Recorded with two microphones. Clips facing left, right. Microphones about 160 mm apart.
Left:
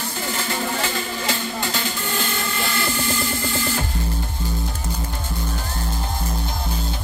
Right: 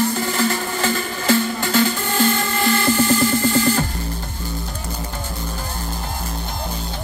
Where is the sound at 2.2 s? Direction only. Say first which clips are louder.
Right 11 dB; 45° right (ahead or behind).